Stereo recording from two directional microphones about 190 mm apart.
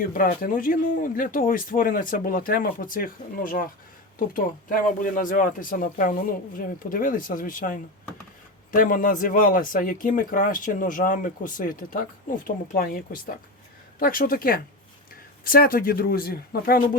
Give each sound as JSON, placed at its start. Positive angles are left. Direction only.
{"t": 0.1, "sound": "speech", "side_deg": 50}
{"t": 14.0, "sound": "speech", "side_deg": 50}